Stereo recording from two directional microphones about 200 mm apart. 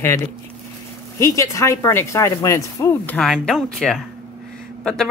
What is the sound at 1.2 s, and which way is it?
Speech, 15° left (ahead or behind).